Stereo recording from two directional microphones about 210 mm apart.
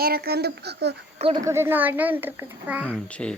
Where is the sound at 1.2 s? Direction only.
20° right (ahead or behind).